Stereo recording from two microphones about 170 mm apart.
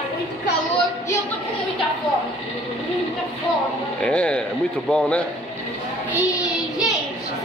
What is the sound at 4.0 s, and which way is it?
A child's voice, 5° left (ahead or behind).